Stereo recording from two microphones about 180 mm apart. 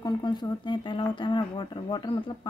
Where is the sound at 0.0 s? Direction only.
25° left (ahead or behind).